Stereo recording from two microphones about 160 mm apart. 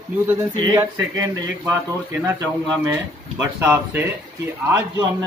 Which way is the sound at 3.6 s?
15° right (ahead or behind).